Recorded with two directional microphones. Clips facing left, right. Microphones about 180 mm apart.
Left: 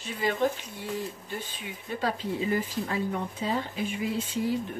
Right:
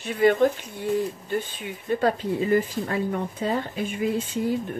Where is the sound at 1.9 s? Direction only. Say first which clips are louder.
Right 7 dB; 55° right (ahead or behind).